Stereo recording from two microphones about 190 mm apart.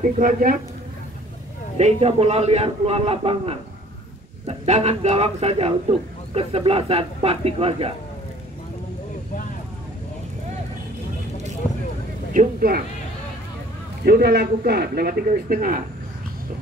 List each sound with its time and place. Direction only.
0.2 s speech: 45° right (ahead or behind)
1.8 s a man's voice: 35° right (ahead or behind)
12.4 s speech: 50° right (ahead or behind)
14.0 s a man's voice: 55° right (ahead or behind)